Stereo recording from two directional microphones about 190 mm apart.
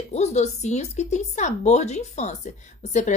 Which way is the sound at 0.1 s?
35° left (ahead or behind).